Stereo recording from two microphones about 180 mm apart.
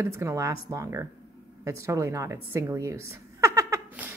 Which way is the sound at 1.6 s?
15° right (ahead or behind).